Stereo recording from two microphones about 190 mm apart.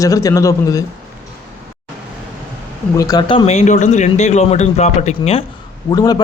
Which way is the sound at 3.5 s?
40° left (ahead or behind).